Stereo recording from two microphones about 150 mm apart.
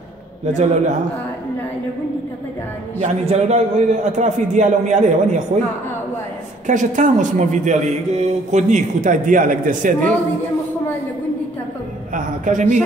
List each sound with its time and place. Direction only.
0.5 s a man's voice: 50° right (ahead or behind)
3.0 s a man's voice: 50° right (ahead or behind)
6.7 s a man's voice: 55° right (ahead or behind)
12.4 s a man's voice: 60° right (ahead or behind)